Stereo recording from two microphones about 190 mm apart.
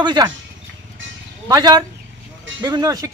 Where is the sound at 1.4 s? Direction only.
20° right (ahead or behind).